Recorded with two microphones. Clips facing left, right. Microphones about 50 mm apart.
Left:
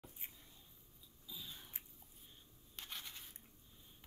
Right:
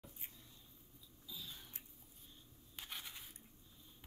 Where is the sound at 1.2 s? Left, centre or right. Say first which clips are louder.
Even; left.